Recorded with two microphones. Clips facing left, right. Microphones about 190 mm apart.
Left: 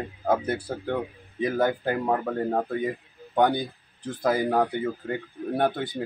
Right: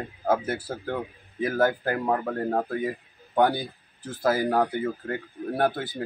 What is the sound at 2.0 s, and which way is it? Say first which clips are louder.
Speech: even; centre (ahead or behind).